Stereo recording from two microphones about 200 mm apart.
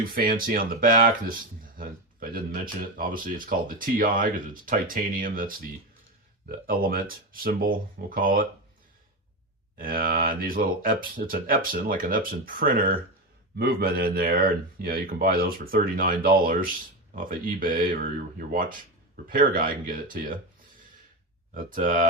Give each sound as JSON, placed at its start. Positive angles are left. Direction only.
{"t": 0.0, "sound": "speech", "side_deg": -45}
{"t": 3.0, "sound": "speech", "side_deg": -45}
{"t": 9.7, "sound": "speech", "side_deg": -45}
{"t": 21.5, "sound": "speech", "side_deg": -40}